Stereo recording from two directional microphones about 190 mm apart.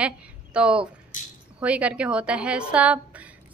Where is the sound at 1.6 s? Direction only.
5° right (ahead or behind).